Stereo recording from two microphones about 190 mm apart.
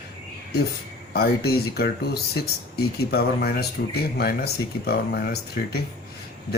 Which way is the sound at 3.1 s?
55° left (ahead or behind).